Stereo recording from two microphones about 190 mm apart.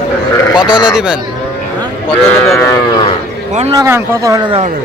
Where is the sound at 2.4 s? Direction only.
15° left (ahead or behind).